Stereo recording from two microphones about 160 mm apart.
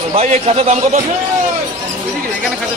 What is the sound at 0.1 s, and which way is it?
Speech, 40° right (ahead or behind).